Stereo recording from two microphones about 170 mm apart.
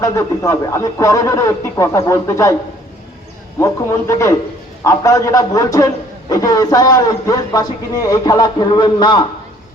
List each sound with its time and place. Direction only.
0.0 s speech: 20° left (ahead or behind)
3.6 s a man's voice: 15° left (ahead or behind)